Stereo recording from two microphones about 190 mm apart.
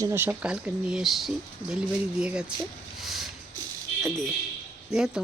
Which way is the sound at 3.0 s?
Centre (ahead or behind).